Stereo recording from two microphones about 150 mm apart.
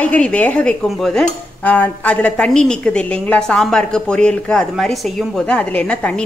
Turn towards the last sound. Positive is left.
turn(degrees=5)  # may be behind; listen again after turning